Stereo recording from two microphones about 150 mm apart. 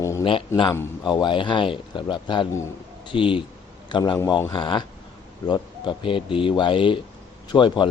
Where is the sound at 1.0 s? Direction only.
30° left (ahead or behind).